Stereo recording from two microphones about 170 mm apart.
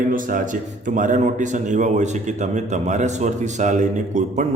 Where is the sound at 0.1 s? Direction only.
55° right (ahead or behind).